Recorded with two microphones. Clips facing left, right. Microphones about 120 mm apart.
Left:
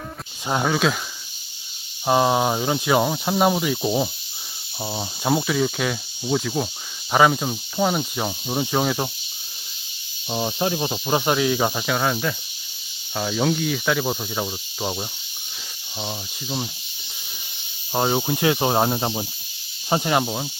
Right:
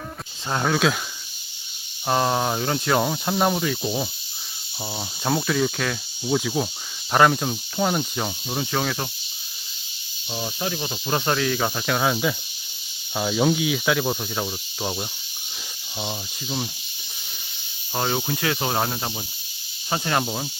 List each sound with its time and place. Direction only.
0.4 s speech: 10° left (ahead or behind)
2.0 s speech: 10° left (ahead or behind)
3.8 s cricket: 20° left (ahead or behind)
4.8 s speech: 10° left (ahead or behind)
10.2 s cricket: 30° left (ahead or behind)
11.1 s speech: 15° left (ahead or behind)
17.9 s cricket: 20° left (ahead or behind)
19.9 s speech: 15° left (ahead or behind)